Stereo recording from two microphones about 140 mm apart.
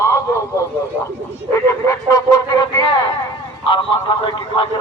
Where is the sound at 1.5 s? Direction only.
25° left (ahead or behind).